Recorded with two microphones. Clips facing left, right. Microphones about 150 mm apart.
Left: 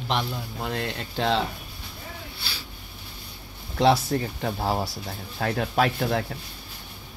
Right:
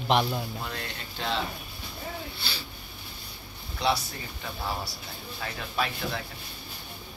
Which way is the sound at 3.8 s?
75° left (ahead or behind).